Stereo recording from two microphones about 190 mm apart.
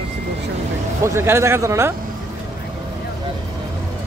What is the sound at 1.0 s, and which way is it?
Speech, 15° right (ahead or behind).